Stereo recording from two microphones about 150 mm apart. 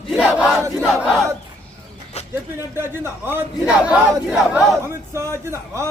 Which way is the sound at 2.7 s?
15° right (ahead or behind).